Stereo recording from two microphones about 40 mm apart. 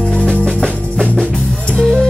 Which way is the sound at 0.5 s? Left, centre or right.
Centre.